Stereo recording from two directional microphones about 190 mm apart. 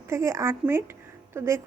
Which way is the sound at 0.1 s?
15° right (ahead or behind).